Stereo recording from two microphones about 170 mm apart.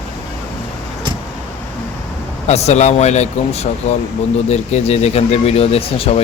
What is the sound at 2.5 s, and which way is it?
Speech, 40° left (ahead or behind).